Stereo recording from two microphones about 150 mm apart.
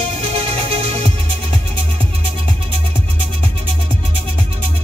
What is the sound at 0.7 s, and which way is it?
Music, 40° right (ahead or behind).